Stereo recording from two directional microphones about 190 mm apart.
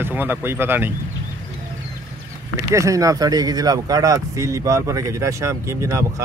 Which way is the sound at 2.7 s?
15° right (ahead or behind).